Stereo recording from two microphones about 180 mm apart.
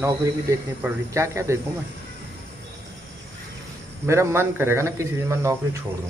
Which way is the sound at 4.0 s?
15° right (ahead or behind).